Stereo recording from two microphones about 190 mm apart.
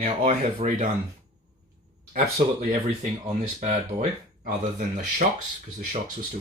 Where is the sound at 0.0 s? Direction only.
35° right (ahead or behind).